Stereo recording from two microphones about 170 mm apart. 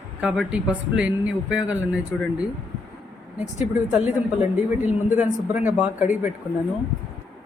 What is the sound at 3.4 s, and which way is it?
A man's voice, 5° right (ahead or behind).